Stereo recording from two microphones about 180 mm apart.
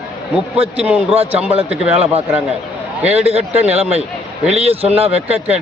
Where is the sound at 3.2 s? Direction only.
35° right (ahead or behind).